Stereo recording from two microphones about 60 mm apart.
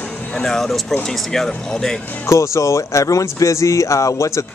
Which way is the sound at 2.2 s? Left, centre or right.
Left.